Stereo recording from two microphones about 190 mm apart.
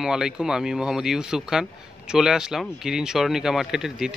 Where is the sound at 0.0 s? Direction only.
5° right (ahead or behind).